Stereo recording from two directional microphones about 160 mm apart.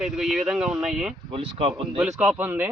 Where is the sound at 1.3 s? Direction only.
35° right (ahead or behind).